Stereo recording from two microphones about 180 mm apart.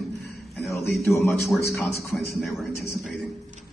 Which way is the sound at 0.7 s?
15° left (ahead or behind).